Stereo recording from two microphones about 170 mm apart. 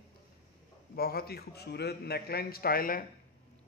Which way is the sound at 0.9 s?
60° left (ahead or behind).